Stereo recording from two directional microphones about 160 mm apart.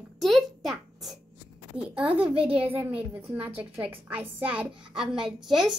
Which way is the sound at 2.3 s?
35° right (ahead or behind).